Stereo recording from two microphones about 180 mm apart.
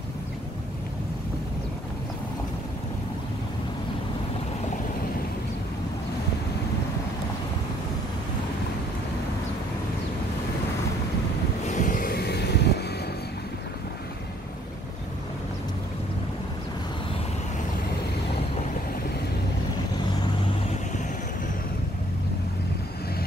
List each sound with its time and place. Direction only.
11.7 s vehicle: 45° left (ahead or behind); by 12.8 s 65° left (ahead or behind)